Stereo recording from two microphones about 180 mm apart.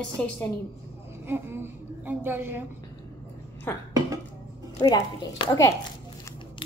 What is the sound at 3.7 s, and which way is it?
Speech, 10° left (ahead or behind).